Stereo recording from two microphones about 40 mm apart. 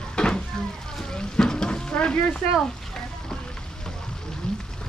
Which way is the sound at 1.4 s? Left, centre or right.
Centre.